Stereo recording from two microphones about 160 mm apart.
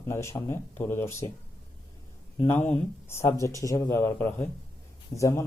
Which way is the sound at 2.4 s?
10° left (ahead or behind).